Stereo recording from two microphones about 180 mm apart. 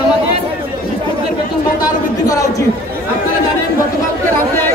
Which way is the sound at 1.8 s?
20° left (ahead or behind).